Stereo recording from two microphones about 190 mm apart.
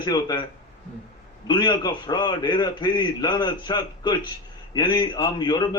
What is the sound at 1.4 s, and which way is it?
A man's voice, 25° left (ahead or behind).